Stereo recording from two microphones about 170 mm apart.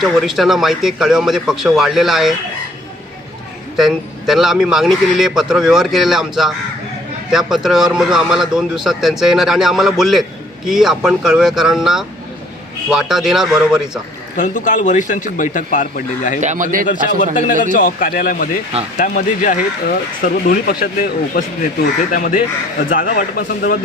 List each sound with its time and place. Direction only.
0.0 s speech: centre (ahead or behind)
3.8 s speech: centre (ahead or behind)
14.3 s speech: 50° left (ahead or behind)
16.4 s speech: 45° right (ahead or behind)
16.8 s speech: 50° left (ahead or behind)